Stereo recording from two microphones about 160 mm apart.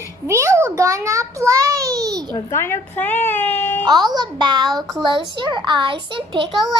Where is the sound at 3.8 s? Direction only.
25° right (ahead or behind).